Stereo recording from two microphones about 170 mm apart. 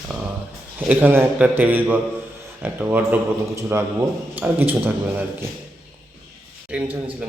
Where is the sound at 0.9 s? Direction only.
10° right (ahead or behind).